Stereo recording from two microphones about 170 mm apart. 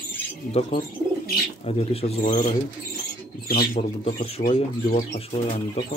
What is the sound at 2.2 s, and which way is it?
Speech, 50° left (ahead or behind).